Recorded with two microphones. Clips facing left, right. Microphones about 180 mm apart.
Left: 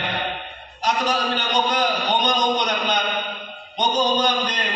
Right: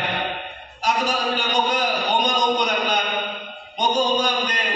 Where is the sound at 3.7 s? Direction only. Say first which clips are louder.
Even; 5° right (ahead or behind).